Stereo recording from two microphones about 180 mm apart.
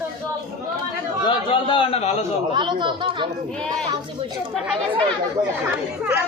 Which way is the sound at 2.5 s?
25° right (ahead or behind).